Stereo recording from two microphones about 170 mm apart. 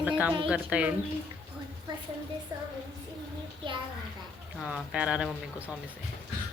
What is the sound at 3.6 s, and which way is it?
Speech, 30° right (ahead or behind).